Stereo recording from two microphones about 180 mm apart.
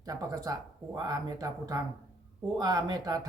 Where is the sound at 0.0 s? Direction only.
20° right (ahead or behind).